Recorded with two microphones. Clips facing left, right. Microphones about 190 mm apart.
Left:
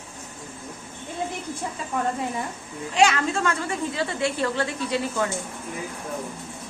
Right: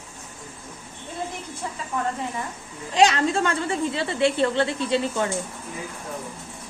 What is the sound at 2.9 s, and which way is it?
A woman's voice, 35° right (ahead or behind).